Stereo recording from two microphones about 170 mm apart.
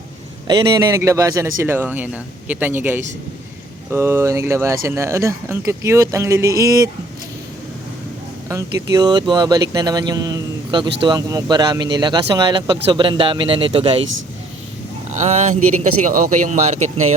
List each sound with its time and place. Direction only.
0.4 s a man's voice: 25° right (ahead or behind)
8.4 s speech: 20° right (ahead or behind)
15.1 s speech: 45° right (ahead or behind)